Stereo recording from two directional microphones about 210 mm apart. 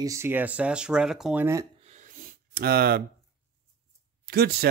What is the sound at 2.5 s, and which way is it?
Speech, 45° right (ahead or behind).